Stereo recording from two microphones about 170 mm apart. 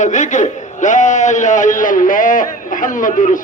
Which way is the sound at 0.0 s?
45° left (ahead or behind).